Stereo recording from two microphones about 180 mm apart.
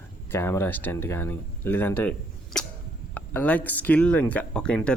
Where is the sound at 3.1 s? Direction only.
10° left (ahead or behind).